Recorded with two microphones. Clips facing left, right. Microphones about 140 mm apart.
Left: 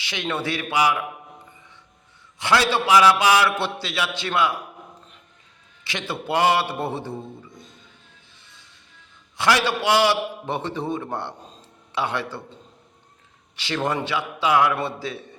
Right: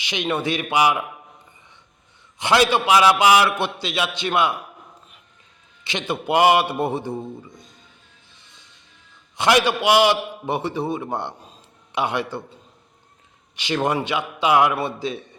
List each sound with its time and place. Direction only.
0.0 s a man's voice: 20° right (ahead or behind)
2.4 s a man's voice: 20° right (ahead or behind)
5.8 s a man's voice: 20° right (ahead or behind)
9.4 s a man's voice: 20° right (ahead or behind)
13.6 s a man's voice: 15° right (ahead or behind)